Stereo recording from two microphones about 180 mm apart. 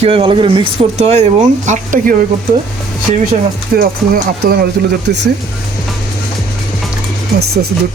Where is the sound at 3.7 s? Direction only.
55° right (ahead or behind).